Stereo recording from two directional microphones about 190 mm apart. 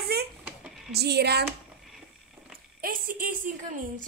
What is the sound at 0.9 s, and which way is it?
Speech, 60° right (ahead or behind).